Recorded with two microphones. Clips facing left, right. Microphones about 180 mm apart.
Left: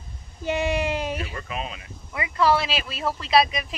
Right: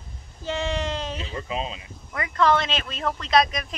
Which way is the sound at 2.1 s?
10° left (ahead or behind).